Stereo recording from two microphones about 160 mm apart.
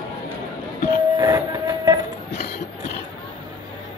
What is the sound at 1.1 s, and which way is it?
Train, 25° right (ahead or behind).